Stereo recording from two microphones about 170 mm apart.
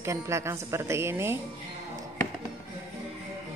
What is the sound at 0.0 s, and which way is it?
Speech, 15° right (ahead or behind).